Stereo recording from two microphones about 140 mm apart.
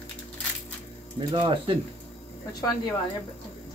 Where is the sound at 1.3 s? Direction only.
40° right (ahead or behind).